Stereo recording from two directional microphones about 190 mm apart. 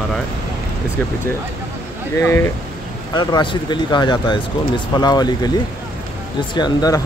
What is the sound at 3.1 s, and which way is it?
Speech, 25° left (ahead or behind).